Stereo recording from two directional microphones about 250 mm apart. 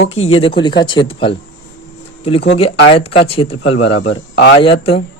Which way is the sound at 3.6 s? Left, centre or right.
Left.